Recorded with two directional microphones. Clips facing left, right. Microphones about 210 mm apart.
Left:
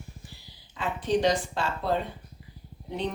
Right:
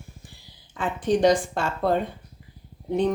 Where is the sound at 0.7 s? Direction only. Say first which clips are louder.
Right 3 dB; 50° right (ahead or behind).